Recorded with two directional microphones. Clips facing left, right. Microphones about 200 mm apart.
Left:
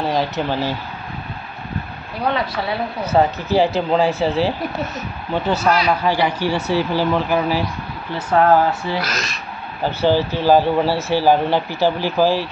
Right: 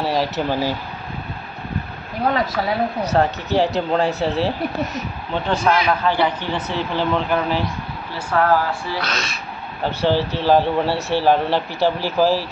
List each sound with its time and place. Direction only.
0.0 s speech: 5° right (ahead or behind)
2.3 s speech: 45° right (ahead or behind)
3.1 s speech: centre (ahead or behind)
8.3 s speech: 20° left (ahead or behind)
9.0 s speech: 5° left (ahead or behind)